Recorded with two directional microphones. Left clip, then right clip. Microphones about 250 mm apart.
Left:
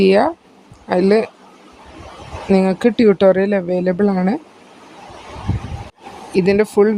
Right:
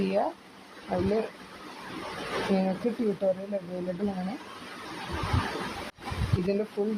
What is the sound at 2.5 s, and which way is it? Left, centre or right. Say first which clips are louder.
Speech: left 15 dB; left.